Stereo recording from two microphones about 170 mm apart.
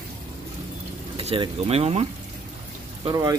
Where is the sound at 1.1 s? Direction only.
35° right (ahead or behind).